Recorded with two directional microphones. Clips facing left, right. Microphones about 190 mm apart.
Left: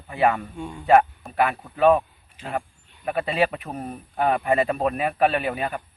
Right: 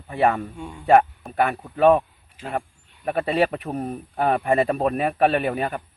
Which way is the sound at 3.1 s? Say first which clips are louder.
Right 2 dB; 40° right (ahead or behind).